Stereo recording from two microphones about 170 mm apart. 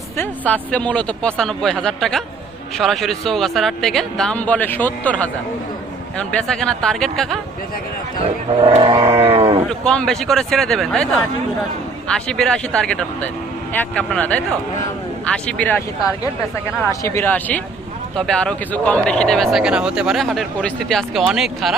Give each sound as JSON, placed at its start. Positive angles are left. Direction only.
{"t": 0.2, "sound": "speech", "side_deg": 10}
{"t": 8.2, "sound": "speech", "side_deg": -35}
{"t": 9.8, "sound": "speech", "side_deg": 5}
{"t": 16.9, "sound": "speech", "side_deg": 15}